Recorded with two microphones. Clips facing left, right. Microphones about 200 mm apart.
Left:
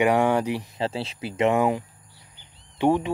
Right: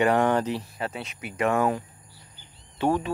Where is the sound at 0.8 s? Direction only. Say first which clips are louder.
Left 5 dB; 30° left (ahead or behind).